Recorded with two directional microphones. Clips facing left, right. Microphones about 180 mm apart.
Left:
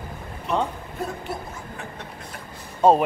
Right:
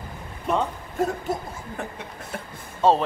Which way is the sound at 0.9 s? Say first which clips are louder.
Right 8 dB; 45° right (ahead or behind).